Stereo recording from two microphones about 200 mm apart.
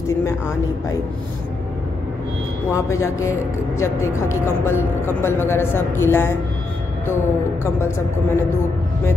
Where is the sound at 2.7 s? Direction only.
15° left (ahead or behind).